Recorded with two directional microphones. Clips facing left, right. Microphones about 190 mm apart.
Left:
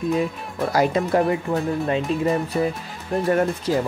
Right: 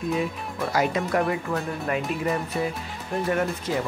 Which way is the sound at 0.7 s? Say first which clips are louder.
Left 4 dB; 30° left (ahead or behind).